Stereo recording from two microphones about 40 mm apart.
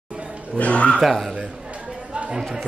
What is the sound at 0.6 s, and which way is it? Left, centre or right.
Speech, left.